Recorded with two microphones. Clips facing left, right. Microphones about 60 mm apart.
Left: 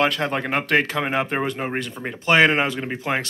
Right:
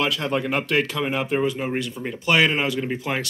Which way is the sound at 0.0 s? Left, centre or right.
Left.